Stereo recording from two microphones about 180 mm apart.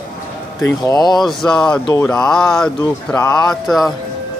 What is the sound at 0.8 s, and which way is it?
Speech, 20° left (ahead or behind).